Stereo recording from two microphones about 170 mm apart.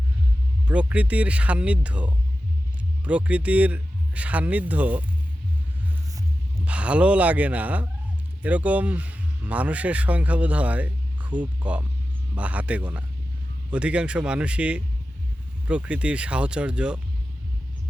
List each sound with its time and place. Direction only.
0.7 s speech: 5° right (ahead or behind)
6.7 s speech: 5° right (ahead or behind)